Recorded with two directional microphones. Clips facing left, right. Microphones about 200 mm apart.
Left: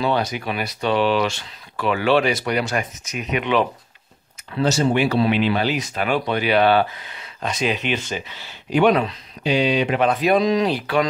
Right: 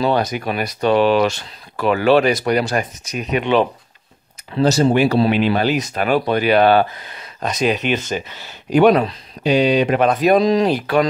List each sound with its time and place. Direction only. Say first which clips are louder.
0.0 s speech: right 3 dB; 45° right (ahead or behind)